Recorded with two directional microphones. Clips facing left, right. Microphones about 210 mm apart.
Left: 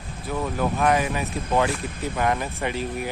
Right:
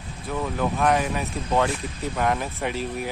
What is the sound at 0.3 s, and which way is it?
Speech, 5° left (ahead or behind).